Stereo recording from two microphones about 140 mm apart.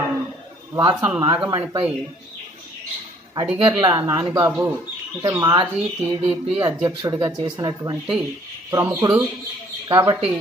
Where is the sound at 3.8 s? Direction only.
20° right (ahead or behind).